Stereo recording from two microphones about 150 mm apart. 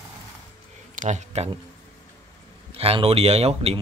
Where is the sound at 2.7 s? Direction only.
40° right (ahead or behind).